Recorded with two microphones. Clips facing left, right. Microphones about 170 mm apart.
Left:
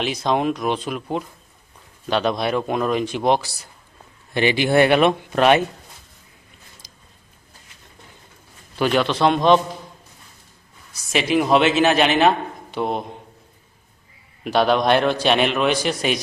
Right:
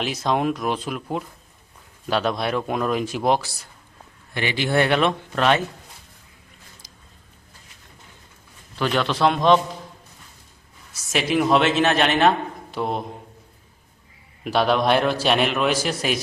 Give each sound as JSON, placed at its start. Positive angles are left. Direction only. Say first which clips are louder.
{"t": 0.0, "sound": "a man's voice", "louder": "left 2 dB", "side_deg": 0}
{"t": 4.4, "sound": "speech", "louder": "left 5 dB", "side_deg": 20}
{"t": 6.8, "sound": "a sound", "louder": "even", "side_deg": 15}
{"t": 8.8, "sound": "a man's voice", "louder": "left 2 dB", "side_deg": 10}
{"t": 11.1, "sound": "a man's voice", "louder": "left 2 dB", "side_deg": 0}
{"t": 14.4, "sound": "a man's voice", "louder": "left 2 dB", "side_deg": 0}